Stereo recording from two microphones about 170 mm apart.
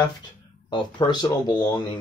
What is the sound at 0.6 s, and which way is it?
Speech, 25° left (ahead or behind).